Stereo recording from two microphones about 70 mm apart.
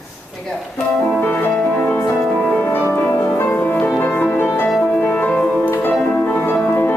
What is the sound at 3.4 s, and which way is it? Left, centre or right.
Music, centre.